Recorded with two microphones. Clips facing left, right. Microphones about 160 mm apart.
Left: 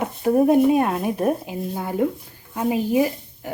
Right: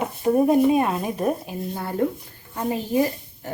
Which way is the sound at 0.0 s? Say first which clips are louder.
Left 1 dB; 5° left (ahead or behind).